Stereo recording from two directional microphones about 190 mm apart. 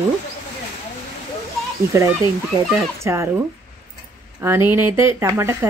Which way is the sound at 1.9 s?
15° right (ahead or behind).